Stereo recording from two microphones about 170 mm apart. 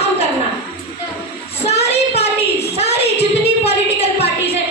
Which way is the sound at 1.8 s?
40° left (ahead or behind).